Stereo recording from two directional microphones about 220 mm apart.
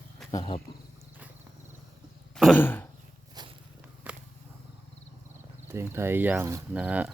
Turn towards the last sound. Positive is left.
turn(degrees=-5)  # may be behind; listen again after turning